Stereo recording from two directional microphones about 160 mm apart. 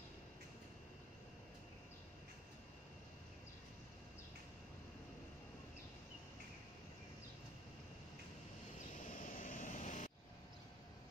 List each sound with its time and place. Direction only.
9.2 s vehicle: 60° left (ahead or behind)